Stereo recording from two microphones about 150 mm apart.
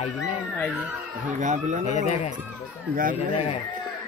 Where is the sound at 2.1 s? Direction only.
45° left (ahead or behind).